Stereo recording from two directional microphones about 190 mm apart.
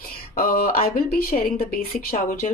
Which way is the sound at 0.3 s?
50° left (ahead or behind).